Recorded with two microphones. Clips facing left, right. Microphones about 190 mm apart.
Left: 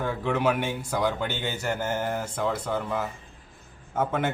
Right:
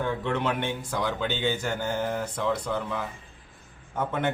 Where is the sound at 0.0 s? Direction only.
5° left (ahead or behind).